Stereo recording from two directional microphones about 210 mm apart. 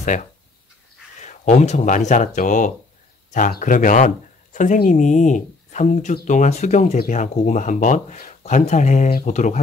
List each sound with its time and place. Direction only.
0.0 s speech: 35° left (ahead or behind)